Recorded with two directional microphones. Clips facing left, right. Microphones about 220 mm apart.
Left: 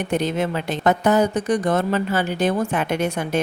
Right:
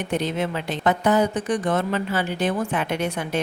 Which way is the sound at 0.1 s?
45° left (ahead or behind).